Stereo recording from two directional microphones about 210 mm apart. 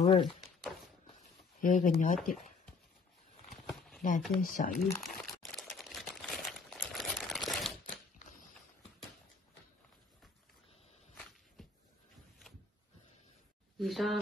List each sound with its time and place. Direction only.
0.0 s speech: 25° left (ahead or behind)
1.6 s speech: 40° left (ahead or behind)
3.4 s a sound: centre (ahead or behind)
4.4 s speech: 40° left (ahead or behind)
5.0 s crumpling: centre (ahead or behind)
11.6 s a sound: centre (ahead or behind)
13.7 s speech: centre (ahead or behind)